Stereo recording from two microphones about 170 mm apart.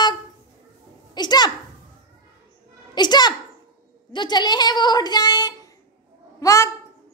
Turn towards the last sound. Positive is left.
turn(degrees=20)  # may be behind; listen again after turning